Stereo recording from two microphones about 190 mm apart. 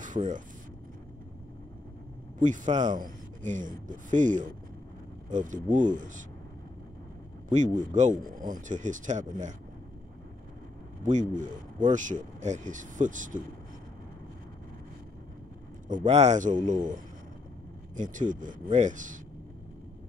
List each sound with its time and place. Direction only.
0.0 s vehicle: 40° right (ahead or behind)
2.4 s speech: 40° right (ahead or behind)
7.4 s speech: 40° right (ahead or behind)
11.1 s speech: 40° right (ahead or behind)
15.9 s speech: 40° right (ahead or behind)
17.9 s speech: 40° right (ahead or behind)